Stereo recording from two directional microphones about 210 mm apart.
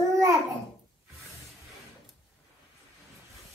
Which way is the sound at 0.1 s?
15° right (ahead or behind).